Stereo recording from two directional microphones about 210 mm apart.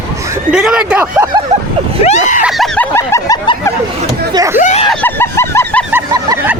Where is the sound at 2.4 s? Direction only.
Centre (ahead or behind).